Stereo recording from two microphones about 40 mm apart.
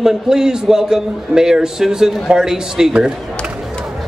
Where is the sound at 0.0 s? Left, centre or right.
Centre.